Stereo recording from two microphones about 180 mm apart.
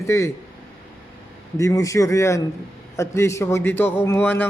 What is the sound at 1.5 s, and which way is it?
A man's voice, 15° left (ahead or behind).